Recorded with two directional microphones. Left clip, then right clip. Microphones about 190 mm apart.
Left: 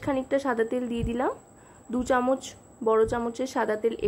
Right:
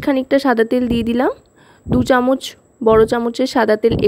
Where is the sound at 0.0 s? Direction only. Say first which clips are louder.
Right 11 dB; 50° right (ahead or behind).